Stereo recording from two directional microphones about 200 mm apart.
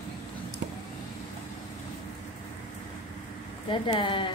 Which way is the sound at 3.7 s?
25° left (ahead or behind).